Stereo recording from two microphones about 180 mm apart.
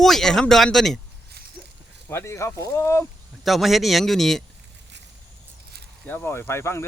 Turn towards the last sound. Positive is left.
turn(degrees=15)  # may be behind; listen again after turning